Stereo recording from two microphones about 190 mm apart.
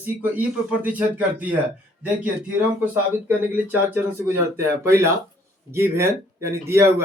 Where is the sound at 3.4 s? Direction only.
10° right (ahead or behind).